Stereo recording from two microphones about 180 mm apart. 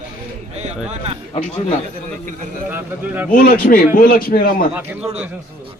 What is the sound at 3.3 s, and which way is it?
A man's voice, 50° left (ahead or behind).